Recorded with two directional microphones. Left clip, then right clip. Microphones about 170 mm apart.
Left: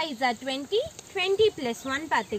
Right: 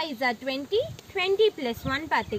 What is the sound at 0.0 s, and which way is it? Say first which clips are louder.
Speech: even; centre (ahead or behind).